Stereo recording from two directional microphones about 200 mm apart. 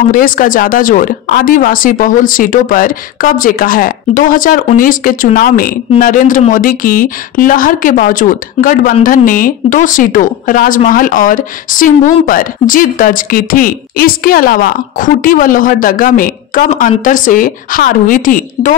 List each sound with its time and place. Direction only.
0.1 s speech: 45° left (ahead or behind)